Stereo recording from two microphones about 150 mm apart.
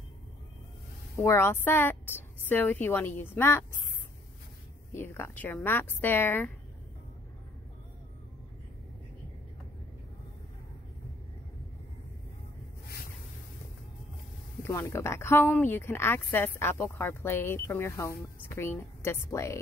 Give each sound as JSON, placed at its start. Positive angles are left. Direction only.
{"t": 1.1, "sound": "speech", "side_deg": 20}
{"t": 4.9, "sound": "speech", "side_deg": 15}
{"t": 14.6, "sound": "speech", "side_deg": 20}